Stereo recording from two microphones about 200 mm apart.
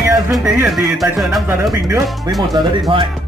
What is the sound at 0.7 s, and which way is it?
Speech, centre (ahead or behind).